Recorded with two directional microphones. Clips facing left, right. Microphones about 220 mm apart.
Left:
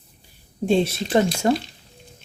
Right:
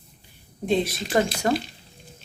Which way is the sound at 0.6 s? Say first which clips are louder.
Left 4 dB; 30° left (ahead or behind).